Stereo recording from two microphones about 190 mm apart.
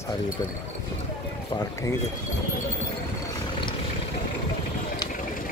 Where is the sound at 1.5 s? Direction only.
20° left (ahead or behind).